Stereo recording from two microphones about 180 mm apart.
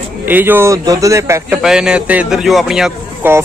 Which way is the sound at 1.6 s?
5° right (ahead or behind).